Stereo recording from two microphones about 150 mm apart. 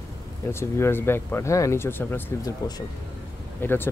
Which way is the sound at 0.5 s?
15° left (ahead or behind).